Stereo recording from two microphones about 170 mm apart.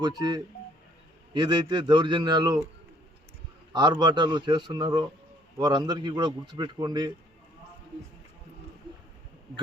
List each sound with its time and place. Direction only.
0.0 s speech: 20° right (ahead or behind)
3.7 s speech: 25° right (ahead or behind)